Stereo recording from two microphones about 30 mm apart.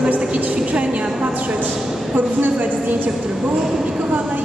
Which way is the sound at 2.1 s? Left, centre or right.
Right.